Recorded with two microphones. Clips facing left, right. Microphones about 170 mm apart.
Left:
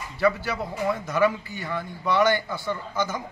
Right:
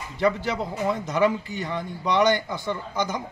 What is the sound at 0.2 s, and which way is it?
A man's voice, 20° right (ahead or behind).